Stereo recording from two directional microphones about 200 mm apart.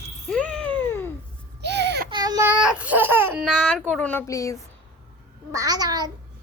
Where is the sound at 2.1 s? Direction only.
20° right (ahead or behind).